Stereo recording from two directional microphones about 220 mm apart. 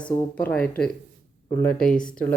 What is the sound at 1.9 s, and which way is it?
Speech, 35° left (ahead or behind).